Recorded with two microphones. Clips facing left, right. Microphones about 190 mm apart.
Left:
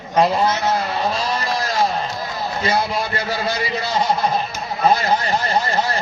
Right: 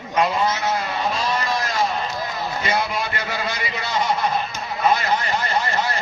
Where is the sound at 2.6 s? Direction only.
35° left (ahead or behind).